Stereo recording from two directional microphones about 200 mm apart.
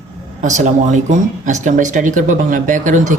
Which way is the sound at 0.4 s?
35° right (ahead or behind).